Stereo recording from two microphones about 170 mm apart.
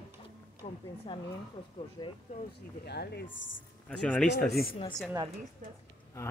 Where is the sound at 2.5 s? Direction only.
75° left (ahead or behind).